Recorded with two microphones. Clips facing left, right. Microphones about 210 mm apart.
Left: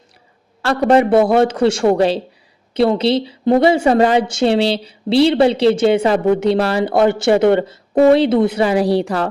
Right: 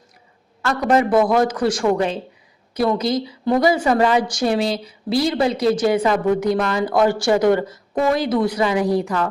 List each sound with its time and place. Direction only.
0.6 s a man's voice: 30° left (ahead or behind)